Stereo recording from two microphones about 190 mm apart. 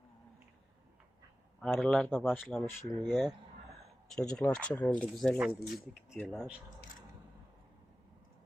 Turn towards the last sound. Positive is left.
turn(degrees=-5)  # may be behind; listen again after turning